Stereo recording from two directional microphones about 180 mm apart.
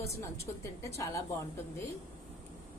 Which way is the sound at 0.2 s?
15° left (ahead or behind).